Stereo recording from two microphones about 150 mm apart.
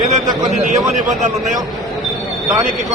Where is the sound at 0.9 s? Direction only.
60° right (ahead or behind).